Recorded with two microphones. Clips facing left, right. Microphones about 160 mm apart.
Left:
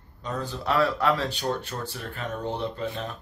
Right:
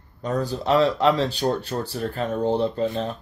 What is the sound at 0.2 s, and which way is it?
Speech, 40° right (ahead or behind).